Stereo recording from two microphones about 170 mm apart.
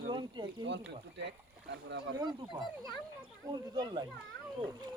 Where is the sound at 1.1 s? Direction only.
90° right.